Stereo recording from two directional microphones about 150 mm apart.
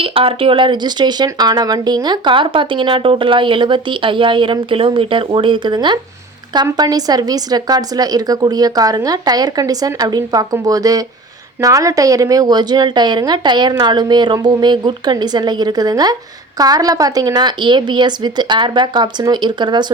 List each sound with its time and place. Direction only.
0.0 s a woman's voice: 40° right (ahead or behind)